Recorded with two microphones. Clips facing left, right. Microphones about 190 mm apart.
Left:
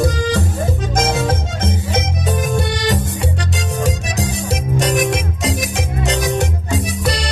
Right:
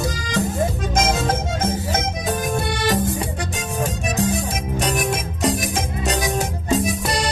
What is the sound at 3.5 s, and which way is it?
Music, 75° left (ahead or behind).